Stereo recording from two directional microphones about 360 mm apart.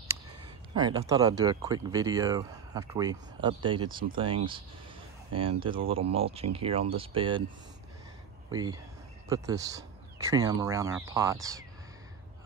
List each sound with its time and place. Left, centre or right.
0.1 s speech: centre
8.5 s speech: centre